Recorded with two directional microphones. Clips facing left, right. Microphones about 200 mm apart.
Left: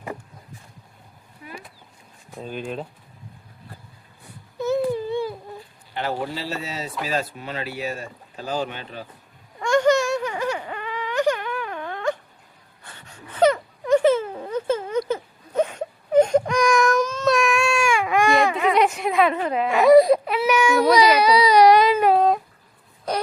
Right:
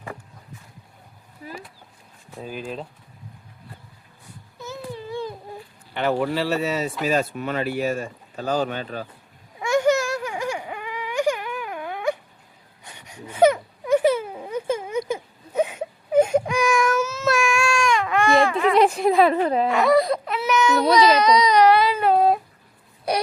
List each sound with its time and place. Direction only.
1.4 s speech: 35° right (ahead or behind)
2.4 s speech: 5° right (ahead or behind)
5.9 s speech: 60° right (ahead or behind); by 9.0 s 45° right (ahead or behind)
9.6 s baby cry: 10° right (ahead or behind)
12.8 s wail: 15° right (ahead or behind); by 18.6 s 15° left (ahead or behind)
18.8 s a sound: 30° right (ahead or behind)
19.7 s baby cry: 15° left (ahead or behind)